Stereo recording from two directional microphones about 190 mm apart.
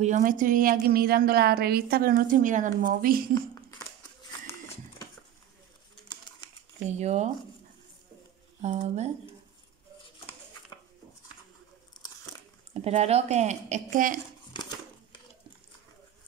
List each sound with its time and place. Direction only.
0.0 s a woman's voice: 45° right (ahead or behind)
3.7 s a sound: 15° left (ahead or behind)
6.4 s a sound: 20° left (ahead or behind)
7.0 s speech: 35° right (ahead or behind)
8.5 s speech: 35° right (ahead or behind)
12.8 s speech: 35° right (ahead or behind)